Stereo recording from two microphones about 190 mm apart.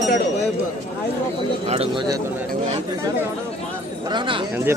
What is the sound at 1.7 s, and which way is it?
Speech, 30° right (ahead or behind).